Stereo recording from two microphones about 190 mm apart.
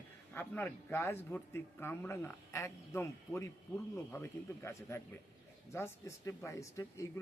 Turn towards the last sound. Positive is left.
turn(degrees=15)  # may be behind; listen again after turning